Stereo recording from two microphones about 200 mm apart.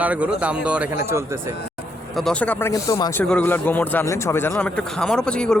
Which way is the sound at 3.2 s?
5° left (ahead or behind).